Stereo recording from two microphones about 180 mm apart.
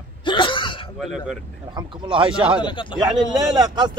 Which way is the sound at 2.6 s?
25° left (ahead or behind).